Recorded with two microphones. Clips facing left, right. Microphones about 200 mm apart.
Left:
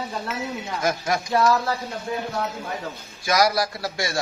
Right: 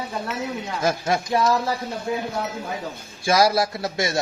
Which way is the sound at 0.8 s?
30° right (ahead or behind).